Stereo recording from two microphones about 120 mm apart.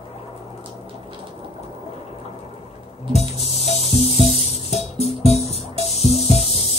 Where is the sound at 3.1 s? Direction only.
60° left (ahead or behind).